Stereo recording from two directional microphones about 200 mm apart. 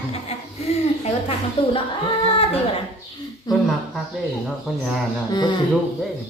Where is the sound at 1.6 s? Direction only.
25° left (ahead or behind).